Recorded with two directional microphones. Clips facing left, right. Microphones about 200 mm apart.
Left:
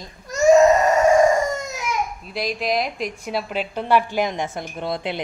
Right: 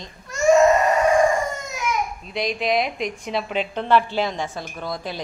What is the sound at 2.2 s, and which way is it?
A woman's voice, 5° left (ahead or behind).